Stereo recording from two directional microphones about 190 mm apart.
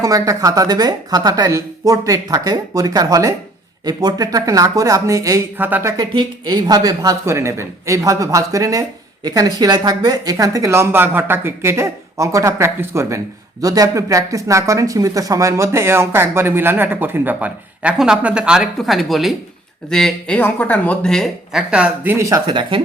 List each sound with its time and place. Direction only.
0.0 s a woman's voice: 15° right (ahead or behind)
6.1 s speech: 25° right (ahead or behind)